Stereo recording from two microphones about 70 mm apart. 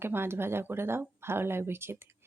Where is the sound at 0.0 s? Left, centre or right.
Right.